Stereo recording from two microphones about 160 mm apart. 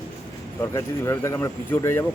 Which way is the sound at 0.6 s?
15° left (ahead or behind).